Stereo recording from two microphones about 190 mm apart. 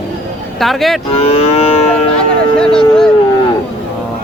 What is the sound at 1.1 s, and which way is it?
Livestock, 30° left (ahead or behind).